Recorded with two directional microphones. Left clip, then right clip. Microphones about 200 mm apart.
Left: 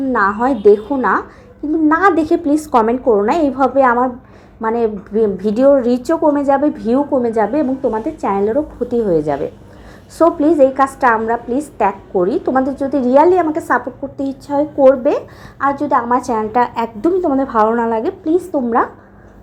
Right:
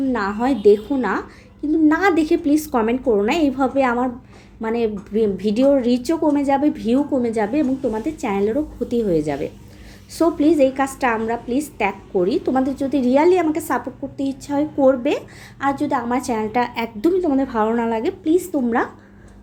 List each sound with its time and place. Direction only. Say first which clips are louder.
0.1 s a woman's voice: left 11 dB; 10° right (ahead or behind)